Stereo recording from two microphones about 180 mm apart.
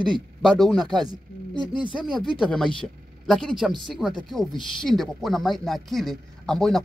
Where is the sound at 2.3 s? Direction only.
5° left (ahead or behind).